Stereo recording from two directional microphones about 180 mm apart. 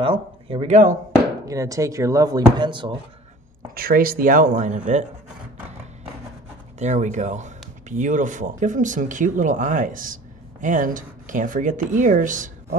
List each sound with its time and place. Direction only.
0.0 s speech: 30° right (ahead or behind)
1.5 s speech: 15° right (ahead or behind)
3.7 s speech: 55° right (ahead or behind)
6.8 s speech: 40° right (ahead or behind)